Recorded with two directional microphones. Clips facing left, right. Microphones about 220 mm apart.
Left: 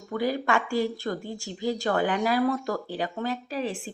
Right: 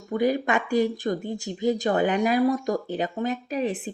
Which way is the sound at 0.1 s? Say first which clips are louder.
Right 3 dB; 20° right (ahead or behind).